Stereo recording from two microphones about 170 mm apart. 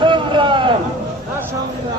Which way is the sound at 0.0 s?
30° right (ahead or behind).